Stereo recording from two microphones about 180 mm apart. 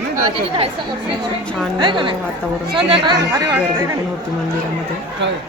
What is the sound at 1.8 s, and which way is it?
Speech, 25° right (ahead or behind).